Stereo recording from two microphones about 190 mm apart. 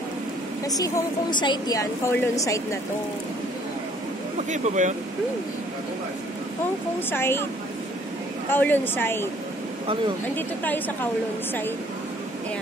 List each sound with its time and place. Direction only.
0.7 s a woman's voice: 20° left (ahead or behind)
4.5 s speech: 40° right (ahead or behind)
7.1 s a woman's voice: 10° left (ahead or behind)
8.5 s a woman's voice: 10° left (ahead or behind)
10.3 s a woman's voice: 10° left (ahead or behind)